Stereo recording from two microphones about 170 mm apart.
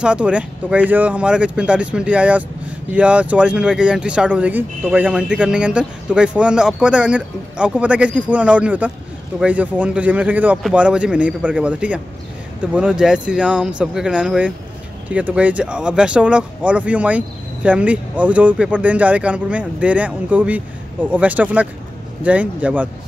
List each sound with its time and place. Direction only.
0.0 s speech: 5° right (ahead or behind)